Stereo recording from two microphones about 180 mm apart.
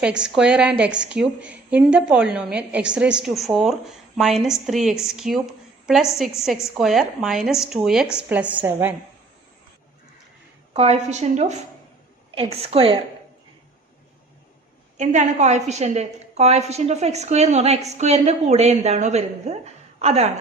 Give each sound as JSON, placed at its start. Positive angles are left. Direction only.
{"t": 0.0, "sound": "a woman's voice", "side_deg": -5}
{"t": 10.8, "sound": "a woman's voice", "side_deg": -35}
{"t": 14.9, "sound": "a woman's voice", "side_deg": -40}